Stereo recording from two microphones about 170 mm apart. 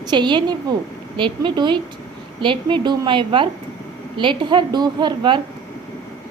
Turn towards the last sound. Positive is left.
turn(degrees=-25)  # may be behind; listen again after turning